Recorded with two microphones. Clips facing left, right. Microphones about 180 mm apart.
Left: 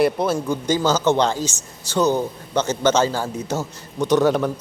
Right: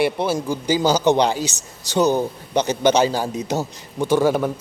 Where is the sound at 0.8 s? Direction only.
15° right (ahead or behind).